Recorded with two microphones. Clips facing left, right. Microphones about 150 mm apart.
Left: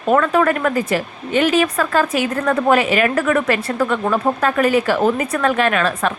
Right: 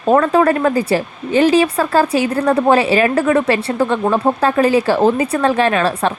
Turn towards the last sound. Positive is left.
turn(degrees=-30)  # may be behind; listen again after turning